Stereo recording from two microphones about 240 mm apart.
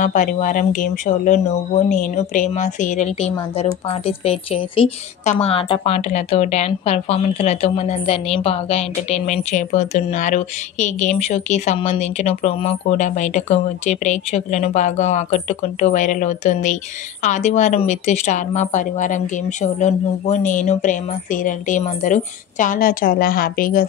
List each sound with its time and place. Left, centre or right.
0.0 s a woman's voice: left